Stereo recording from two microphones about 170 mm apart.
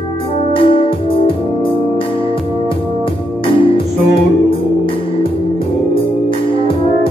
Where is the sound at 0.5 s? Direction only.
30° left (ahead or behind).